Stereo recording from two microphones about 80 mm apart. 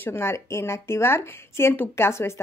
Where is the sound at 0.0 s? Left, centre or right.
Left.